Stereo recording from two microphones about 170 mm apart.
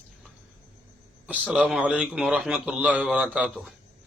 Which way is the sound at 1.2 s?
10° right (ahead or behind).